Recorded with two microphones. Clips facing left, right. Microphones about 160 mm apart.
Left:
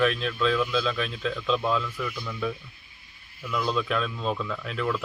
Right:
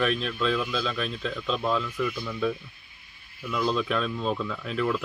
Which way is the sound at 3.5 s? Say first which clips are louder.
Right 1 dB; centre (ahead or behind).